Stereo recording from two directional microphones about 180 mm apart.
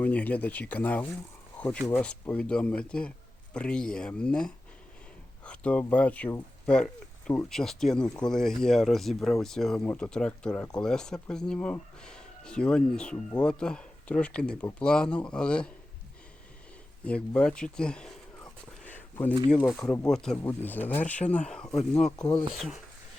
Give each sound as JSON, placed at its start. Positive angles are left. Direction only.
{"t": 0.0, "sound": "speech", "side_deg": 10}
{"t": 17.1, "sound": "speech", "side_deg": 5}
{"t": 18.9, "sound": "a sound", "side_deg": 10}
{"t": 19.5, "sound": "speech", "side_deg": 5}
{"t": 19.8, "sound": "speech", "side_deg": 15}
{"t": 20.1, "sound": "speech", "side_deg": 5}